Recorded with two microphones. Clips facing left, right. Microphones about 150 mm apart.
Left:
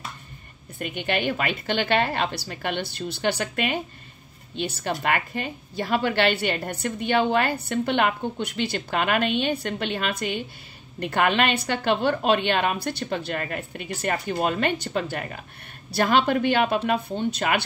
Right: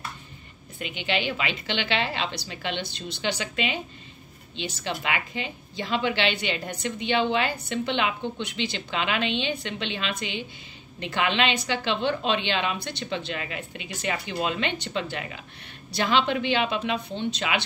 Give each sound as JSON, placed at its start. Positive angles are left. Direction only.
{"t": 0.7, "sound": "a woman's voice", "side_deg": 50}